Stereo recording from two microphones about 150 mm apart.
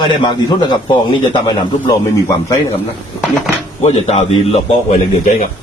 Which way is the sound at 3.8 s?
45° left (ahead or behind).